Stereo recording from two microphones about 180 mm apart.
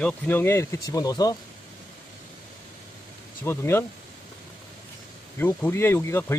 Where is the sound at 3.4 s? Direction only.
15° left (ahead or behind).